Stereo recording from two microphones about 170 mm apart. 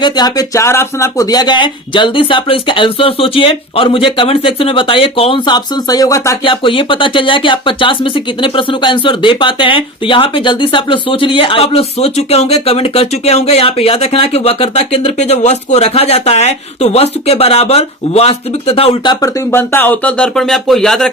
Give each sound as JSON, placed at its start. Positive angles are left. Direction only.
{"t": 0.0, "sound": "speech", "side_deg": 25}
{"t": 6.4, "sound": "speech", "side_deg": 30}
{"t": 19.2, "sound": "speech", "side_deg": 15}